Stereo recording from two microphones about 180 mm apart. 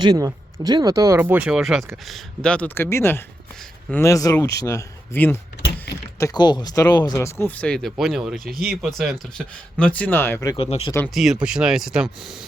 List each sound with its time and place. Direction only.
0.0 s speech: 20° right (ahead or behind); by 10.6 s 15° left (ahead or behind)
10.6 s speech: 30° left (ahead or behind)
11.1 s speech: centre (ahead or behind)